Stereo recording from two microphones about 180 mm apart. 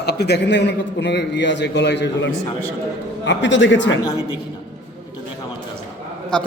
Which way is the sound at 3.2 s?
85° left.